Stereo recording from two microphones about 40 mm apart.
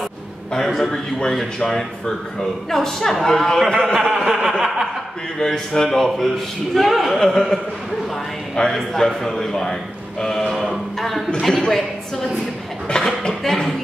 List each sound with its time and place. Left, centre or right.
0.7 s chuckle: centre
1.3 s speech: centre
3.8 s chuckle: centre
5.4 s speech: centre
6.9 s chuckle: centre
7.2 s speech: centre
8.7 s speech: centre
10.5 s a sound: centre
11.4 s speech: centre
12.9 s a sound: centre
13.3 s speech: centre